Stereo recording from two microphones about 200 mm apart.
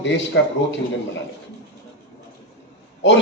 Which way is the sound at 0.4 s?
65° left (ahead or behind).